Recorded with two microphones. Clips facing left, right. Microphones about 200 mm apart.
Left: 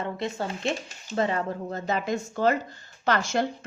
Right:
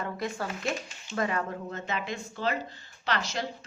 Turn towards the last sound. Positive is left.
turn(degrees=50)  # may be behind; listen again after turning